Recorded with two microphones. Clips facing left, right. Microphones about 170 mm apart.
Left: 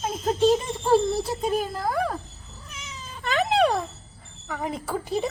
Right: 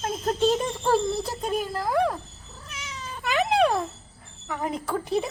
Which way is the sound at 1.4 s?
Centre (ahead or behind).